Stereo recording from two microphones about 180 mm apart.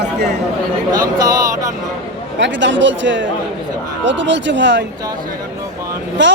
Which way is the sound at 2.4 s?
85° right.